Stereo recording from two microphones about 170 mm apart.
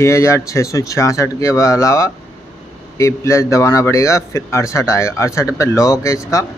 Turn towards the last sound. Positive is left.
turn(degrees=20)  # may be behind; listen again after turning